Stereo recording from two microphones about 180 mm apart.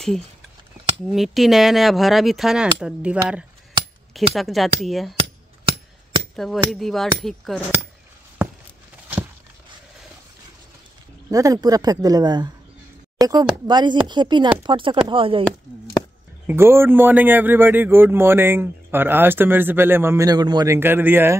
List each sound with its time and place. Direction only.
1.0 s speech: centre (ahead or behind)
6.3 s speech: centre (ahead or behind)
11.2 s speech: 20° right (ahead or behind)
16.4 s a man's voice: 15° right (ahead or behind)